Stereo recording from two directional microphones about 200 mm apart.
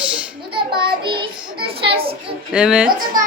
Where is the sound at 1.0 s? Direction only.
25° right (ahead or behind).